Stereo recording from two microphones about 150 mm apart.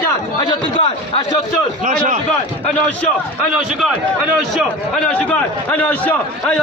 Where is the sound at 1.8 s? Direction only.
60° right (ahead or behind).